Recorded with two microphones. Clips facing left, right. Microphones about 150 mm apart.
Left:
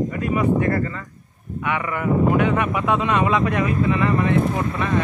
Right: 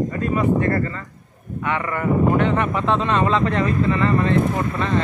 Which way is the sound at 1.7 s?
5° left (ahead or behind).